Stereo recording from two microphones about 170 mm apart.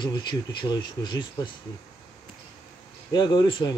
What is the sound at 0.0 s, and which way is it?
Speech, 25° left (ahead or behind).